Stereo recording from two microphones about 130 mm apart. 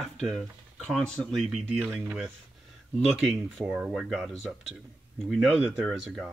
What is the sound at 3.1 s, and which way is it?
Speech, centre (ahead or behind).